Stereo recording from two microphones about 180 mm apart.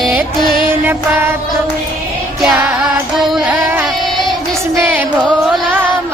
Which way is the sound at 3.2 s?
5° right (ahead or behind).